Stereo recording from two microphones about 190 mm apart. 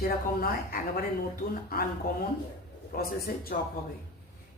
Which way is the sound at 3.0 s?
50° left (ahead or behind).